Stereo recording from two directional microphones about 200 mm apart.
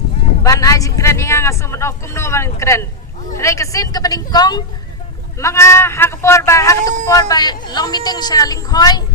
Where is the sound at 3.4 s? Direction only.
15° left (ahead or behind).